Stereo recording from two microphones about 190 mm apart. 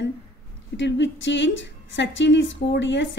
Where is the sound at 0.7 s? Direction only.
70° left (ahead or behind).